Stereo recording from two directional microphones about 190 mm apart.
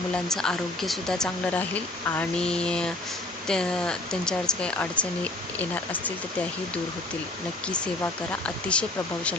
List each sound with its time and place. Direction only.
0.1 s speech: 5° left (ahead or behind)
7.7 s speech: 5° left (ahead or behind)